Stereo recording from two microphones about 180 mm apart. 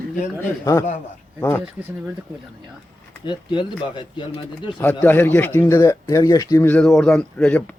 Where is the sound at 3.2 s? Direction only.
25° left (ahead or behind).